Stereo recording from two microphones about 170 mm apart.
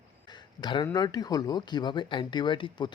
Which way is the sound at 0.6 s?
25° left (ahead or behind).